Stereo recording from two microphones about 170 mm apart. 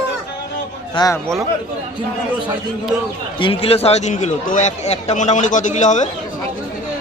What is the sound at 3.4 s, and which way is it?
A man's voice, 30° left (ahead or behind).